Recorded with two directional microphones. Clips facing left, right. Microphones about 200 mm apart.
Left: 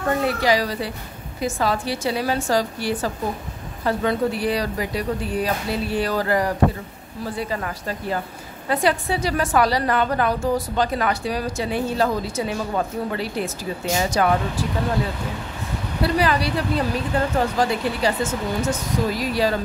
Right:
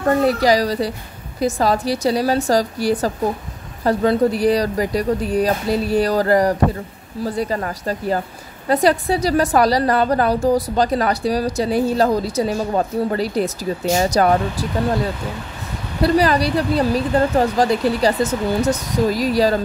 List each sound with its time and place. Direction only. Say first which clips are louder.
0.2 s a woman's voice: right 5 dB; 40° right (ahead or behind)
16.0 s a woman's voice: right 5 dB; 40° right (ahead or behind)